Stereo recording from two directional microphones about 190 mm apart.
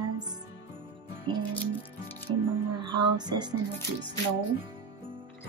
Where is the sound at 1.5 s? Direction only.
10° left (ahead or behind).